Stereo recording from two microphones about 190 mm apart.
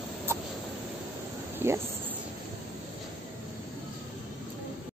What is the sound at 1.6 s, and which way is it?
Cricket, 10° right (ahead or behind).